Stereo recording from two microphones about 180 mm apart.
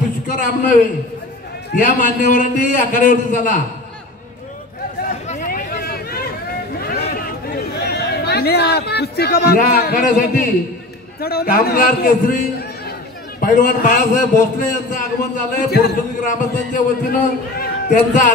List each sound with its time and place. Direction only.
0.3 s a man's voice: 45° left (ahead or behind)
1.8 s a man's voice: 45° left (ahead or behind)
5.3 s a sound: 45° left (ahead or behind)
7.2 s chatter: 60° left (ahead or behind)
11.1 s a man's voice: 60° left (ahead or behind)
13.4 s a man's voice: 50° left (ahead or behind)